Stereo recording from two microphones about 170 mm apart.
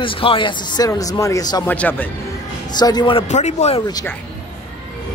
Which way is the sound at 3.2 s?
45° left (ahead or behind).